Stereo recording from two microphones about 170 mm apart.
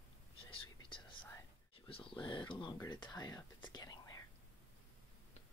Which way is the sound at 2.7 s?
25° left (ahead or behind).